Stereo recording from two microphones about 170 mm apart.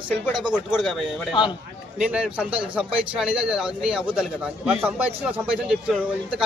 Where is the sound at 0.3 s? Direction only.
25° right (ahead or behind).